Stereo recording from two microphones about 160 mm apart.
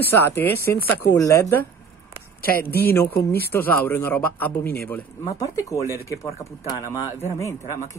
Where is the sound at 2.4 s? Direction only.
70° left (ahead or behind).